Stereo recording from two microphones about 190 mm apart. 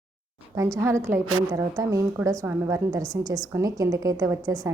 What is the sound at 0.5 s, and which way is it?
A woman's voice, 15° right (ahead or behind).